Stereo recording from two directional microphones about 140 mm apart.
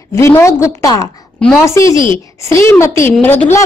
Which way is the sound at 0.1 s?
20° left (ahead or behind).